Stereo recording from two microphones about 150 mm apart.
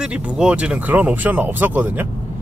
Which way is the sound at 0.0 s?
5° right (ahead or behind).